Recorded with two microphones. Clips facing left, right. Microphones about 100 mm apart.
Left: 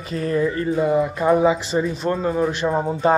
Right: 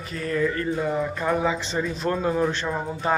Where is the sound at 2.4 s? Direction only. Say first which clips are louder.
Left 5 dB; 15° left (ahead or behind).